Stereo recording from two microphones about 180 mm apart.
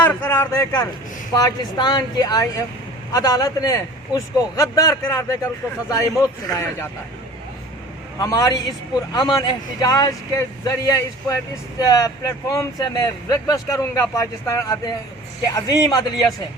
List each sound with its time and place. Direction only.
0.0 s a sound: 10° left (ahead or behind)
1.3 s a man's voice: 20° left (ahead or behind)
8.2 s speech: 20° left (ahead or behind)